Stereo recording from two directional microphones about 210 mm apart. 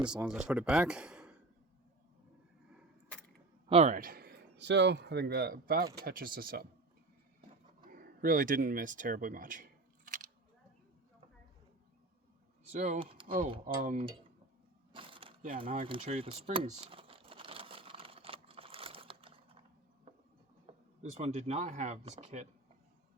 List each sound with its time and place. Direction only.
0.0 s speech: 5° right (ahead or behind)
3.7 s a man's voice: 30° right (ahead or behind)
7.9 s speech: 45° right (ahead or behind)
12.8 s speech: 35° right (ahead or behind)
14.9 s a sound: 25° right (ahead or behind)
15.9 s crumpling: 30° right (ahead or behind)
20.7 s a sound: 30° right (ahead or behind)
21.0 s speech: 35° right (ahead or behind)